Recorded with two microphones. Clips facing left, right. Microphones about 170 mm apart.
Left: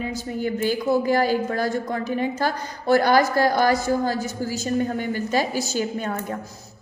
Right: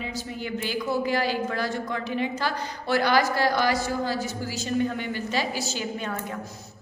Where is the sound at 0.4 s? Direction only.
45° left (ahead or behind).